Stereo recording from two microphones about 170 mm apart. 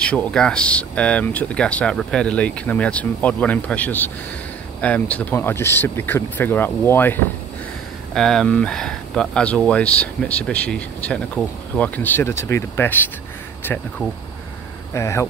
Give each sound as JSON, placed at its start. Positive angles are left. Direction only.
{"t": 0.0, "sound": "speech", "side_deg": 5}
{"t": 15.0, "sound": "speech", "side_deg": 15}